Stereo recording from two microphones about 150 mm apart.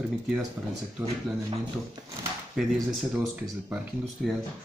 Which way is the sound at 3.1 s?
10° right (ahead or behind).